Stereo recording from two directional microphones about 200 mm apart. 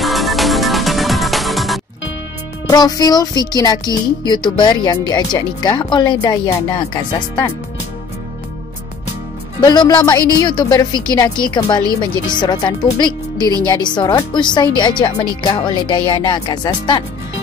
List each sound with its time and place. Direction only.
0.0 s music: centre (ahead or behind)
2.7 s speech: 20° left (ahead or behind)
9.6 s speech: 20° left (ahead or behind)